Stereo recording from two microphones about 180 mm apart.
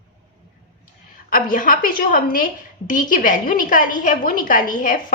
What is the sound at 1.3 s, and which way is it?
A woman's voice, 50° left (ahead or behind).